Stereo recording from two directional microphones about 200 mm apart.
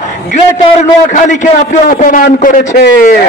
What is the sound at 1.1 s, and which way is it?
A man's voice, 40° left (ahead or behind).